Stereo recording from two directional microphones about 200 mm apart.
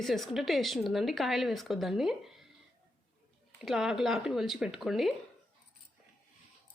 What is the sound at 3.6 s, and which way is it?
Speech, centre (ahead or behind).